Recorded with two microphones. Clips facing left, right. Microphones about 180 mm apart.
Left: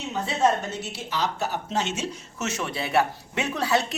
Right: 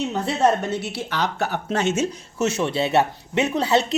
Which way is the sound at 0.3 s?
65° right (ahead or behind).